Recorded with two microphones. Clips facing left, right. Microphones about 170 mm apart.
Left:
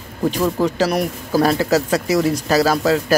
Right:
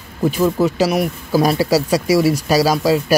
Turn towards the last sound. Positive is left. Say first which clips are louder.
# right 1 dB
turn(degrees=-10)  # may be behind; listen again after turning